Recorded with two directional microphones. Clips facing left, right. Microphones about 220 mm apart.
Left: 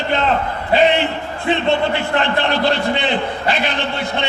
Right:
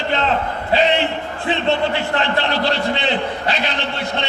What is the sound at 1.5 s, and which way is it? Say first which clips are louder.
A man's voice: left 2 dB; 55° left (ahead or behind).